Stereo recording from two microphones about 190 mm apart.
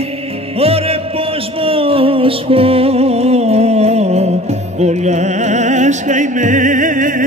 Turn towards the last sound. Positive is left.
turn(degrees=-45)  # may be behind; listen again after turning